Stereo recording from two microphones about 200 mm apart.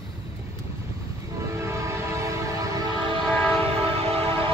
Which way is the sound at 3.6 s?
30° right (ahead or behind).